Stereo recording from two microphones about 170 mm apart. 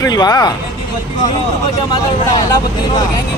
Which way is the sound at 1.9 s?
25° left (ahead or behind).